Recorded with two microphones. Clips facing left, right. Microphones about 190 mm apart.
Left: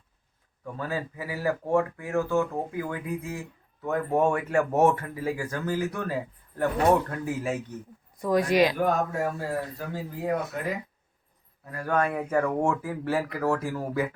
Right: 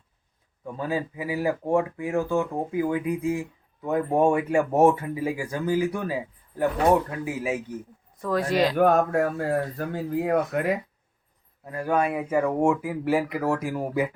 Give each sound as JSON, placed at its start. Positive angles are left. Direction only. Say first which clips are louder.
{"t": 0.6, "sound": "speech", "louder": "right 4 dB", "side_deg": -15}
{"t": 8.2, "sound": "speech", "louder": "left 1 dB", "side_deg": 15}
{"t": 8.7, "sound": "speech", "louder": "right 6 dB", "side_deg": -60}
{"t": 11.6, "sound": "speech", "louder": "right 2 dB", "side_deg": -20}